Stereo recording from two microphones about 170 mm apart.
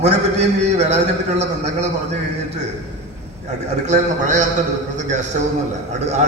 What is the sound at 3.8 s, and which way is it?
A man's voice, 45° right (ahead or behind).